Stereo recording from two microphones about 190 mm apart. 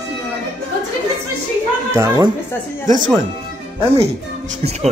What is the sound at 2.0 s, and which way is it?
Speech, 15° right (ahead or behind).